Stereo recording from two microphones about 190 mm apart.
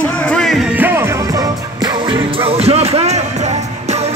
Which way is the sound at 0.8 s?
10° right (ahead or behind).